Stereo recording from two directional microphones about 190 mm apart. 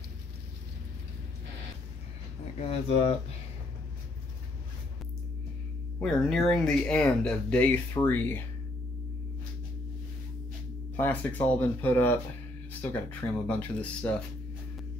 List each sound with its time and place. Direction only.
2.6 s speech: 30° left (ahead or behind)
5.9 s speech: 5° left (ahead or behind)
11.0 s speech: 10° left (ahead or behind)